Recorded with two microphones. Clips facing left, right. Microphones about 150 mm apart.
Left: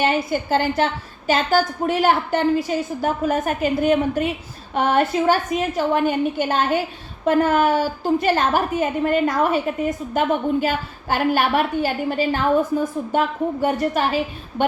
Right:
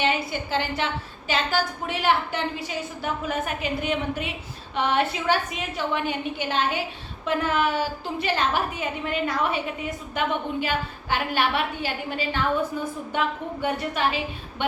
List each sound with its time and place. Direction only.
0.0 s a woman's voice: 45° left (ahead or behind)